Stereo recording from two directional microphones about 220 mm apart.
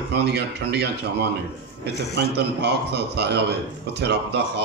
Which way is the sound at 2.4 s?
50° right (ahead or behind).